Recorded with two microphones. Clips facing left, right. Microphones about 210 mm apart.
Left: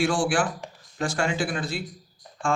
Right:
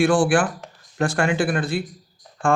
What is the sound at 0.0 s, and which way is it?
A man's voice, 55° right (ahead or behind).